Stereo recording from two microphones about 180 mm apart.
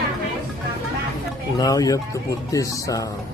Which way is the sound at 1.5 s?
20° left (ahead or behind).